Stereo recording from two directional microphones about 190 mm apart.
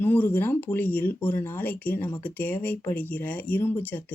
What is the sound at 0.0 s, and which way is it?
Speech, 10° left (ahead or behind).